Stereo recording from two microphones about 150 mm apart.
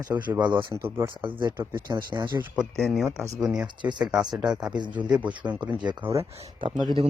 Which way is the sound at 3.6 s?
30° right (ahead or behind).